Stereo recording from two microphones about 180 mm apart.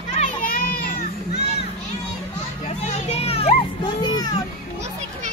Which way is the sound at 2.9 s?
35° left (ahead or behind).